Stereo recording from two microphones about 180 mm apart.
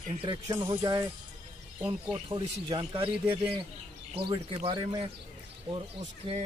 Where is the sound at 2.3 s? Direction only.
30° right (ahead or behind).